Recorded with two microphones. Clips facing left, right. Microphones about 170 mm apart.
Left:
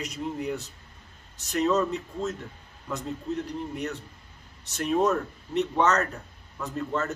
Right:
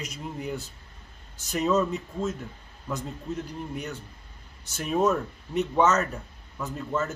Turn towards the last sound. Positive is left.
turn(degrees=0)  # may be behind; listen again after turning